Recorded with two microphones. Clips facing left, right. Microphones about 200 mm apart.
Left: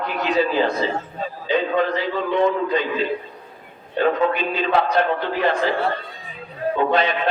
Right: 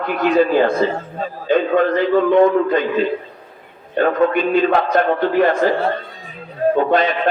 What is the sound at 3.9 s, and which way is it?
A man's voice, 50° right (ahead or behind).